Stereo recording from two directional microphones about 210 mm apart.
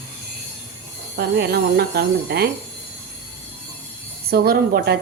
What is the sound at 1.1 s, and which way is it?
A woman's voice, 45° right (ahead or behind).